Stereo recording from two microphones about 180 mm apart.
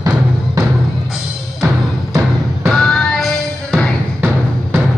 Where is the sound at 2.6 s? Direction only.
5° left (ahead or behind).